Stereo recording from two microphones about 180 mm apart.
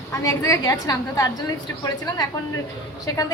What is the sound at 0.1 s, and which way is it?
A woman's voice, 15° left (ahead or behind).